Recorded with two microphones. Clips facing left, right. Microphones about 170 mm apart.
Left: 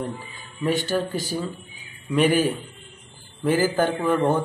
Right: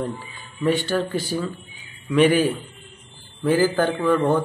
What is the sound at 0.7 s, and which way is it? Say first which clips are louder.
Speech: right 3 dB; 45° left (ahead or behind).